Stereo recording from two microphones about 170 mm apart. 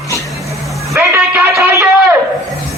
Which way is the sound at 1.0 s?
10° right (ahead or behind).